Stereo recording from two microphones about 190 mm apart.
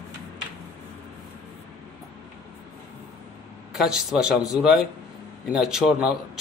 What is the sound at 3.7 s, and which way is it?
A man's voice, centre (ahead or behind).